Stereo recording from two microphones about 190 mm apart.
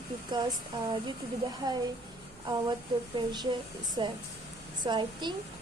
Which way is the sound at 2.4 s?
20° right (ahead or behind).